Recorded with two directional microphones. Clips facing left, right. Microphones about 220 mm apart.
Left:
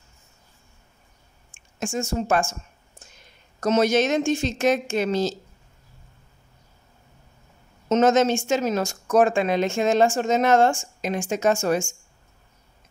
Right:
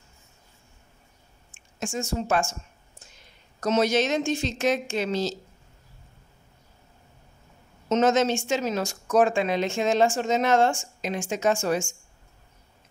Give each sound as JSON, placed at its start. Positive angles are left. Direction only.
{"t": 1.8, "sound": "a woman's voice", "side_deg": 45}
{"t": 3.6, "sound": "a woman's voice", "side_deg": 50}
{"t": 7.9, "sound": "a woman's voice", "side_deg": 50}